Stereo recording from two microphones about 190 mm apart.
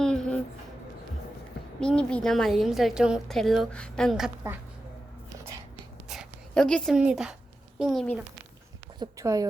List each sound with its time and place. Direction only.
0.0 s a sound: 5° left (ahead or behind)
1.8 s a woman's voice: 5° left (ahead or behind)
6.1 s a woman's voice: centre (ahead or behind)
9.0 s speech: 15° right (ahead or behind)